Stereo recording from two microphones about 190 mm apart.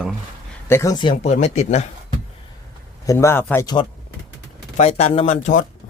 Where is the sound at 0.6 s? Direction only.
15° left (ahead or behind).